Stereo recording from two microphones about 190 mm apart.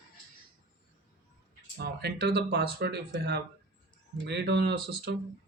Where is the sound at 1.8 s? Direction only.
60° right (ahead or behind).